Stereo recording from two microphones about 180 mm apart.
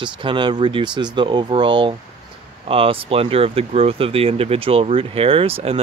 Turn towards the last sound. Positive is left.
turn(degrees=-35)  # may be behind; listen again after turning